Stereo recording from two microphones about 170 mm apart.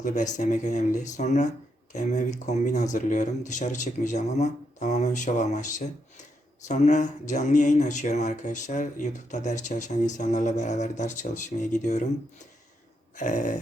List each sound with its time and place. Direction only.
0.0 s speech: 45° left (ahead or behind)
13.1 s speech: 50° left (ahead or behind)